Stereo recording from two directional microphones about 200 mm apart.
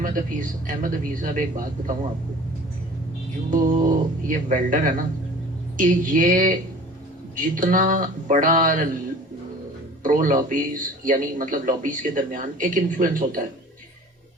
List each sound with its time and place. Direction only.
0.0 s speech: 45° right (ahead or behind)
3.5 s a man's voice: 40° right (ahead or behind)
10.0 s a man's voice: 40° right (ahead or behind)